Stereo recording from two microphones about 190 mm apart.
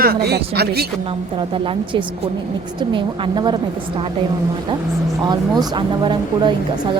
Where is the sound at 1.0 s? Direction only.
25° right (ahead or behind).